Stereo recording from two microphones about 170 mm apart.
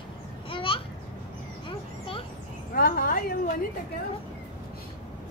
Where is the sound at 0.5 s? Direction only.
30° left (ahead or behind).